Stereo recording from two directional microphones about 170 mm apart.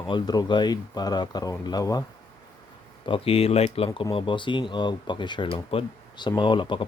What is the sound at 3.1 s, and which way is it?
Speech, 35° left (ahead or behind).